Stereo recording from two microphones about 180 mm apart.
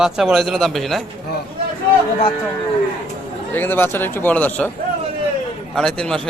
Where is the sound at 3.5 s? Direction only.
10° left (ahead or behind).